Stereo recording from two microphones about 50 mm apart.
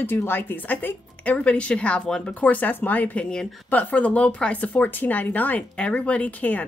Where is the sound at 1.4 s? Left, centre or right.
Left.